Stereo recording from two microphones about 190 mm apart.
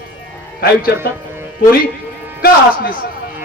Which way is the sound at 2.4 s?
55° left (ahead or behind).